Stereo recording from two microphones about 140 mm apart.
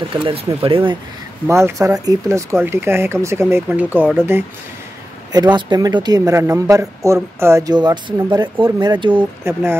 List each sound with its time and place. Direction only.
0.1 s speech: 40° right (ahead or behind)
1.5 s speech: 20° right (ahead or behind)
5.3 s speech: 30° right (ahead or behind)
9.1 s speech: 15° right (ahead or behind)